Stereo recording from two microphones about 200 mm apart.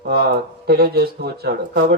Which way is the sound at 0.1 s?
50° right (ahead or behind).